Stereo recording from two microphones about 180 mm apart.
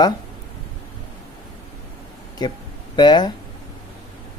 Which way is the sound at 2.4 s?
25° left (ahead or behind).